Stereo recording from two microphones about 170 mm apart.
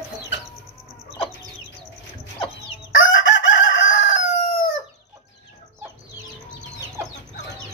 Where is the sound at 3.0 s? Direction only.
90° left.